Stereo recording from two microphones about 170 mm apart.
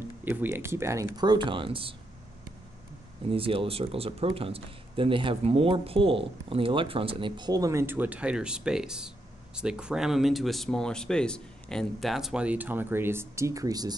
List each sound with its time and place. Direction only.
0.2 s speech: 10° right (ahead or behind); by 2.0 s 30° right (ahead or behind)
3.3 s speech: 35° right (ahead or behind)